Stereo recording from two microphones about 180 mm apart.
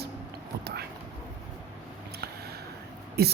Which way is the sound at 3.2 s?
65° right (ahead or behind).